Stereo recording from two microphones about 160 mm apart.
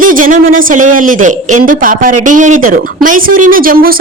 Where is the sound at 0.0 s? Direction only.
60° right (ahead or behind).